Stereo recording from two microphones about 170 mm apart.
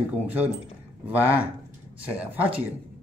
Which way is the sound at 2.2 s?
10° right (ahead or behind).